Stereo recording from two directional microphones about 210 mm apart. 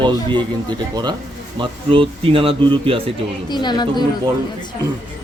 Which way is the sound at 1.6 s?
25° right (ahead or behind).